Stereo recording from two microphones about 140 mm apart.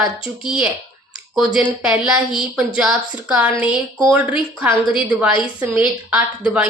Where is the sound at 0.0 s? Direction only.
5° right (ahead or behind).